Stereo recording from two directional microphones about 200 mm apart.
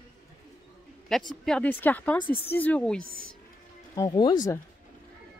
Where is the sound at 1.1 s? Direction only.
Centre (ahead or behind).